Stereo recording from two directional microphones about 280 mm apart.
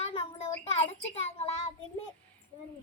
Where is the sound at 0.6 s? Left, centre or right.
Left.